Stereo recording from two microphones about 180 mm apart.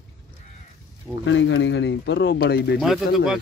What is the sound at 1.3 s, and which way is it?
Speech, 90° left.